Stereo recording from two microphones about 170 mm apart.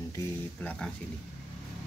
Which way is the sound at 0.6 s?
5° left (ahead or behind).